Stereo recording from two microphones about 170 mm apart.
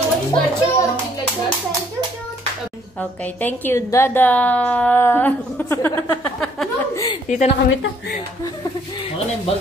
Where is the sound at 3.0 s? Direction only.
10° left (ahead or behind).